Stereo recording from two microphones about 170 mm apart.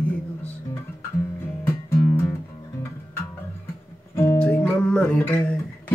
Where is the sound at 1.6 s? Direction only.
15° left (ahead or behind).